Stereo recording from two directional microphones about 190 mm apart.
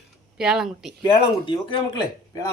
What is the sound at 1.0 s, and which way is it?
Speech, 25° left (ahead or behind).